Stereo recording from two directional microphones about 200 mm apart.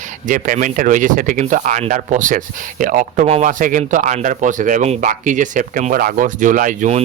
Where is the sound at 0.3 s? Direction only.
40° right (ahead or behind).